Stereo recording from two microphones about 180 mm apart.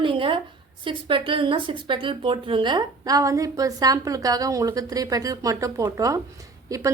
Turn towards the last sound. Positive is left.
turn(degrees=-20)  # may be behind; listen again after turning